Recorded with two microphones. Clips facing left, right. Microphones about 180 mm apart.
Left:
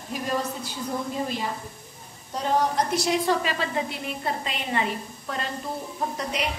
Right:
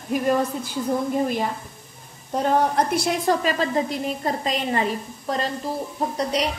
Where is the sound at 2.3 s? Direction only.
55° right (ahead or behind).